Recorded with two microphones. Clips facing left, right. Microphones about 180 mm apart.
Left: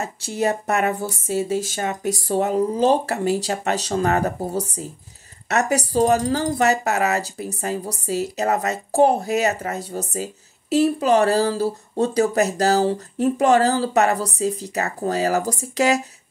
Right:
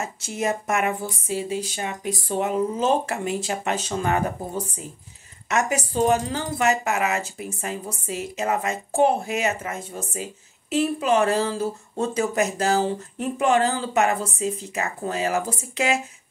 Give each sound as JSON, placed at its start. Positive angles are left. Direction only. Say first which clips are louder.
{"t": 0.0, "sound": "speech", "louder": "left 4 dB", "side_deg": 35}